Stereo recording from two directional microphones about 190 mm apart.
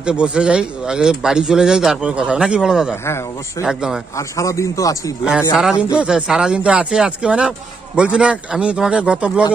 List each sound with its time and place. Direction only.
0.0 s speech: 5° right (ahead or behind)
4.2 s speech: 15° left (ahead or behind)
5.2 s speech: 5° right (ahead or behind)